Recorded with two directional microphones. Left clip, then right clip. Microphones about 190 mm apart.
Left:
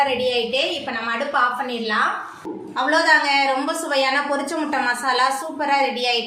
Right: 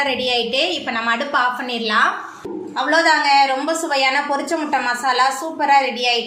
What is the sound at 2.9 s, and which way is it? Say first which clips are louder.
A woman's voice: right 2 dB; 10° right (ahead or behind).